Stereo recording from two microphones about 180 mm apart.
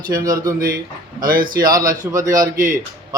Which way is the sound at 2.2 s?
50° right (ahead or behind).